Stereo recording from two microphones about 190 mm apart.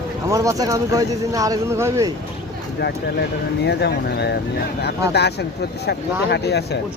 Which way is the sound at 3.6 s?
60° left (ahead or behind).